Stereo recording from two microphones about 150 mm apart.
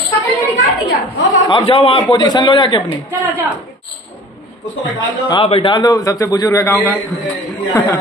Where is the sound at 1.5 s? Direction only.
35° left (ahead or behind).